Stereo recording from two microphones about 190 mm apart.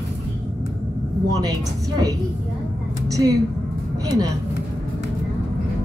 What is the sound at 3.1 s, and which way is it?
A woman's voice, 20° right (ahead or behind).